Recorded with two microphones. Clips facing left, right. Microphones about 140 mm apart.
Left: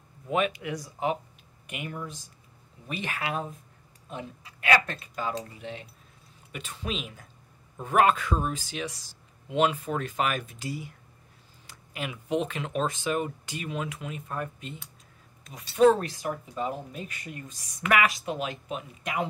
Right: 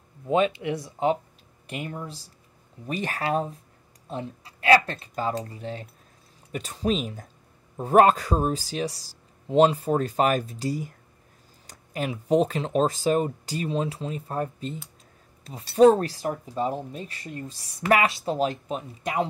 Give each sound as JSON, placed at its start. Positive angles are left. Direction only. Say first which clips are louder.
{"t": 0.3, "sound": "speech", "louder": "right 5 dB", "side_deg": -30}